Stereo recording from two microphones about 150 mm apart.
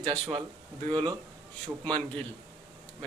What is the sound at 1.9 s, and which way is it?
Speech, 10° left (ahead or behind).